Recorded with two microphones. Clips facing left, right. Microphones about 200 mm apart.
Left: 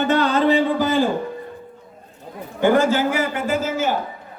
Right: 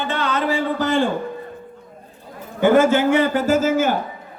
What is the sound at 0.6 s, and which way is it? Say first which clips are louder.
Speech: left 1 dB; 10° left (ahead or behind).